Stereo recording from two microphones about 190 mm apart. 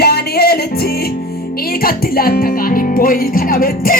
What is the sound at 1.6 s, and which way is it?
Speech, 50° left (ahead or behind).